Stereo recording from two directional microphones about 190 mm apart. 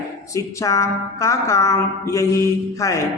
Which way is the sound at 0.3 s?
15° left (ahead or behind).